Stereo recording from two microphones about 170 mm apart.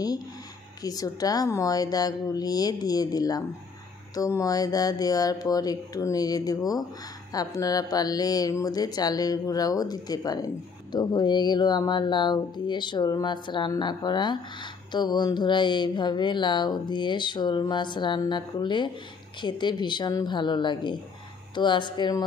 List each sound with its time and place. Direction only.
0.8 s speech: 20° left (ahead or behind)